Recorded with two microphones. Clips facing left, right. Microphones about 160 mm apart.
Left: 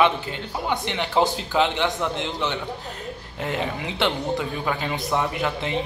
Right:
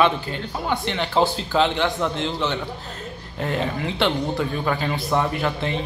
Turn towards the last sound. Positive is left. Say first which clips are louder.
# right 1 dB
turn(degrees=20)  # may be behind; listen again after turning